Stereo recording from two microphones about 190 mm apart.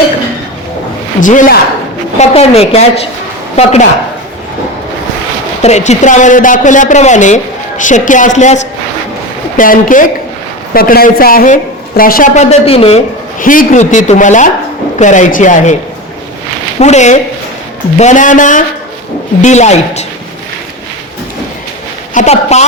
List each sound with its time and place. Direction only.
1.2 s a man's voice: 40° left (ahead or behind)
5.6 s a man's voice: 35° left (ahead or behind)
13.4 s speech: 45° left (ahead or behind)
16.8 s speech: 35° left (ahead or behind)
22.1 s speech: 40° left (ahead or behind)